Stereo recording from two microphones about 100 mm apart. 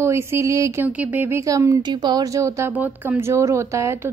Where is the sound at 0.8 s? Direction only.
15° right (ahead or behind).